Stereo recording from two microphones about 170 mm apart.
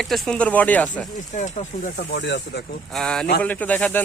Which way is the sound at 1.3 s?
45° left (ahead or behind).